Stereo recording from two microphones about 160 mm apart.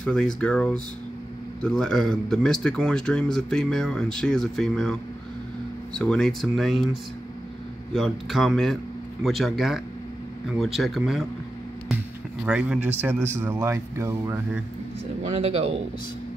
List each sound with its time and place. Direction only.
0.0 s speech: 5° left (ahead or behind)
5.9 s speech: 5° left (ahead or behind)
7.9 s speech: centre (ahead or behind)
12.4 s speech: 5° right (ahead or behind)
15.3 s a man's voice: 40° right (ahead or behind)